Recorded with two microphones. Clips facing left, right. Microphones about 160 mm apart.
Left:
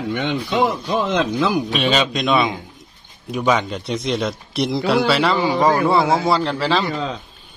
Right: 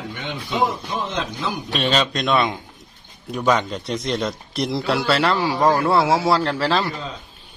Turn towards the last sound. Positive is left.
turn(degrees=0)  # may be behind; listen again after turning